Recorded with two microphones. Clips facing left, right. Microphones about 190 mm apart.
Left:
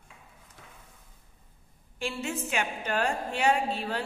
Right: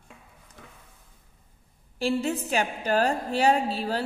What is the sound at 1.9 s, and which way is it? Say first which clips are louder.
A woman's voice: right 7 dB; 35° right (ahead or behind).